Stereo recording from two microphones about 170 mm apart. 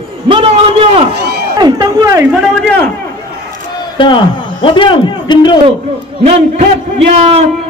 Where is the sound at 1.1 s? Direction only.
75° right (ahead or behind).